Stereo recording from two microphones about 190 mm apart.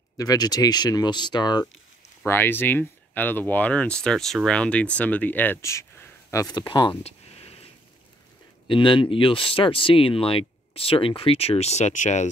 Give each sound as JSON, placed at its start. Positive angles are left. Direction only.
{"t": 0.2, "sound": "speech", "side_deg": 20}
{"t": 2.2, "sound": "speech", "side_deg": 10}
{"t": 8.6, "sound": "speech", "side_deg": 25}